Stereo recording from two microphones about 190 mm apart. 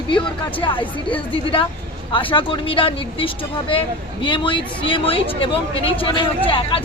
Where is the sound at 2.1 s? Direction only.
25° left (ahead or behind).